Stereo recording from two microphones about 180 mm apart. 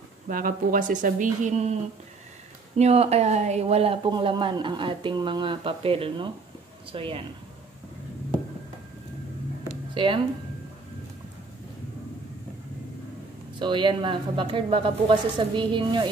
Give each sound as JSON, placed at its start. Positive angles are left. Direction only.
{"t": 0.3, "sound": "speech", "side_deg": -50}
{"t": 2.8, "sound": "speech", "side_deg": -35}
{"t": 9.9, "sound": "speech", "side_deg": -25}
{"t": 13.6, "sound": "speech", "side_deg": -25}